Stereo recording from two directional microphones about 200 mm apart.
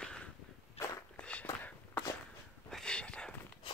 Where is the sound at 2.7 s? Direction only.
5° left (ahead or behind).